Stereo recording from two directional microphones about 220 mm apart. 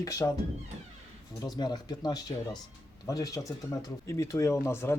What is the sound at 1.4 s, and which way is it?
Speech, 20° left (ahead or behind).